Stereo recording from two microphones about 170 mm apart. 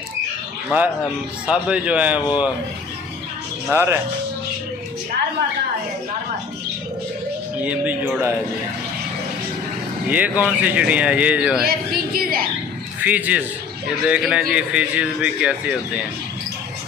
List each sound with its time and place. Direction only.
0.7 s speech: 10° right (ahead or behind)
3.7 s speech: 15° right (ahead or behind)
7.6 s speech: 10° right (ahead or behind)
10.0 s speech: 10° right (ahead or behind)
11.6 s a sound: 60° right (ahead or behind)
13.0 s speech: 10° right (ahead or behind)